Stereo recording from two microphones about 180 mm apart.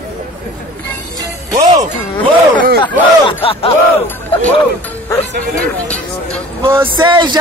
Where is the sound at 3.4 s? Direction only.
30° left (ahead or behind).